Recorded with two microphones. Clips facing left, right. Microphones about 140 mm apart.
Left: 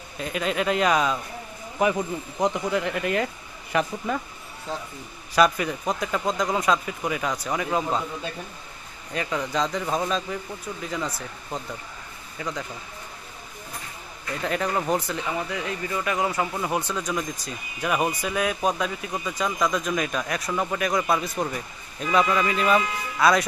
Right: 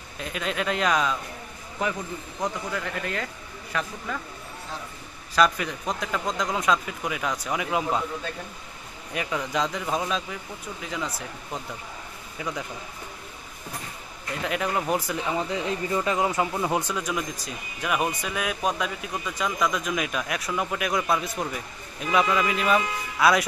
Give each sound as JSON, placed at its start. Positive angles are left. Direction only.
{"t": 0.2, "sound": "speech", "side_deg": 0}
{"t": 1.8, "sound": "speech", "side_deg": 15}
{"t": 5.3, "sound": "speech", "side_deg": 5}
{"t": 9.1, "sound": "speech", "side_deg": -5}
{"t": 14.4, "sound": "speech", "side_deg": -5}
{"t": 15.3, "sound": "speech", "side_deg": -20}